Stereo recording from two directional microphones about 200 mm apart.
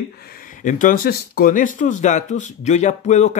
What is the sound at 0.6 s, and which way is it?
Speech, 40° left (ahead or behind).